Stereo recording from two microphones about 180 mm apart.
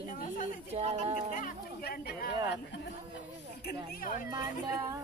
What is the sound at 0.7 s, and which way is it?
Speech, 35° right (ahead or behind).